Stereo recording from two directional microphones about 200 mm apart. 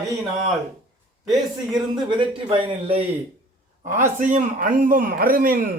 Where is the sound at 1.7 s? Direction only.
20° right (ahead or behind).